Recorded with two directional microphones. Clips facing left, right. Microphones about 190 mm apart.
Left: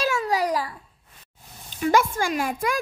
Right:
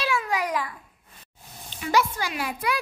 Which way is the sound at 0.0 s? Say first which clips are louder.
Left 3 dB; 40° left (ahead or behind).